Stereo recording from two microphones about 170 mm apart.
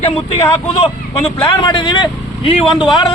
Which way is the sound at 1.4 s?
25° left (ahead or behind).